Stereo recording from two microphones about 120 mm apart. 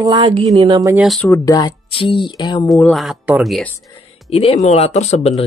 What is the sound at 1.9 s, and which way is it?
Speech, 45° left (ahead or behind).